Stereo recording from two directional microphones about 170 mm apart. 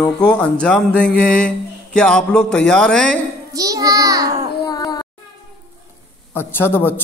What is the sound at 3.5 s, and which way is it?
Speech, 20° right (ahead or behind).